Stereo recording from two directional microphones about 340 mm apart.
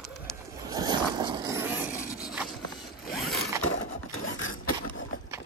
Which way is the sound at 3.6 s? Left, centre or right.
Left.